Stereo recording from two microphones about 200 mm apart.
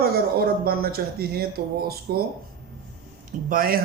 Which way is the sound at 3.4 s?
45° right (ahead or behind).